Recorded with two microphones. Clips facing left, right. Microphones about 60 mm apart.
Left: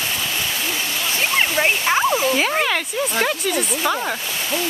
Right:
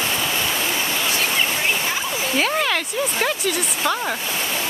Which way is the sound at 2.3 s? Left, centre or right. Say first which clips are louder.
Left 1 dB; centre.